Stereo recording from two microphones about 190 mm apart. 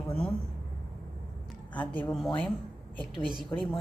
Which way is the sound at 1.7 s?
5° left (ahead or behind).